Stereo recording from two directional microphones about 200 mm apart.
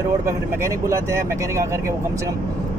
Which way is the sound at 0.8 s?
15° right (ahead or behind).